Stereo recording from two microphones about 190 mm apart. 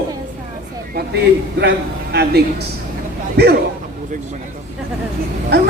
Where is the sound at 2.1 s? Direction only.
55° right (ahead or behind).